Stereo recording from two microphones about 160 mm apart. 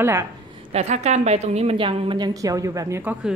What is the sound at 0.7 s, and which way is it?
A woman's voice, 40° right (ahead or behind).